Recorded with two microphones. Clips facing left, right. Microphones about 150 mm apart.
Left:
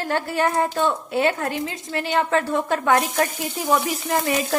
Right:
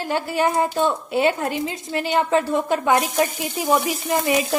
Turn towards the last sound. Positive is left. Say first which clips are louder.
# right 2 dB
turn(degrees=-15)  # may be behind; listen again after turning